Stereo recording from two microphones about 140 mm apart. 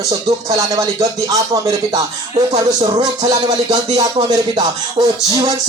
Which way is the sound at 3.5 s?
50° right (ahead or behind).